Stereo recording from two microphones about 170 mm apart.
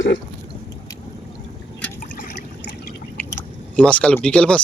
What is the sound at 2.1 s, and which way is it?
Trickle, 60° left (ahead or behind).